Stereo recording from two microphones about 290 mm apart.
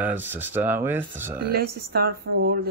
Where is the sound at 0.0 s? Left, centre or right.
Centre.